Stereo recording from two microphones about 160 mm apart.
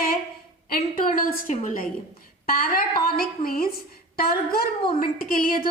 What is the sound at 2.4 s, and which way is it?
A woman's voice, 70° left (ahead or behind).